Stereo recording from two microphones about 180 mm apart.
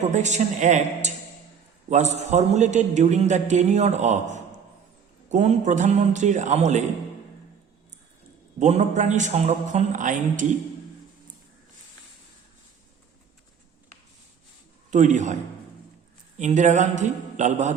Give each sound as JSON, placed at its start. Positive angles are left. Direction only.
{"t": 0.0, "sound": "a man's voice", "side_deg": -40}
{"t": 8.5, "sound": "a man's voice", "side_deg": -40}
{"t": 14.8, "sound": "a man's voice", "side_deg": -40}
{"t": 16.4, "sound": "a man's voice", "side_deg": -40}